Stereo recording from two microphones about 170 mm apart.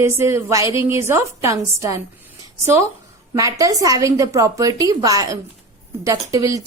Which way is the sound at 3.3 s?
20° right (ahead or behind).